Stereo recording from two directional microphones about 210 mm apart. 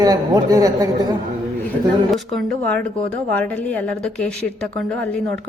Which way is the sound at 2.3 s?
5° left (ahead or behind).